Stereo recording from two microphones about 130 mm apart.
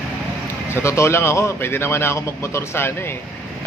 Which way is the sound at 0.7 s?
20° left (ahead or behind).